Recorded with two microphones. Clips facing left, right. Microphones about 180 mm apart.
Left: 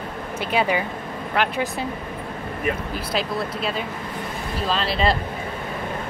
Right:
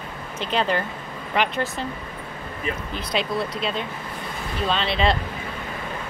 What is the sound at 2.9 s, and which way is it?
Speech, 5° left (ahead or behind).